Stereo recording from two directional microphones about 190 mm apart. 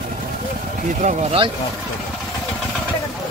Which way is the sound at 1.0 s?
30° right (ahead or behind).